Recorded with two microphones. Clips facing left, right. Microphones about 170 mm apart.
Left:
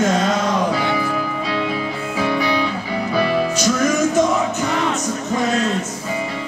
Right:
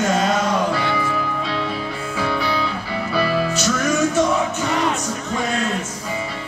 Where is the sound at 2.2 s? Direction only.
15° left (ahead or behind).